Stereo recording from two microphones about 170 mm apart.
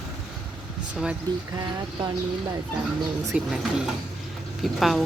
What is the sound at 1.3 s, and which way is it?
Speech, 25° right (ahead or behind).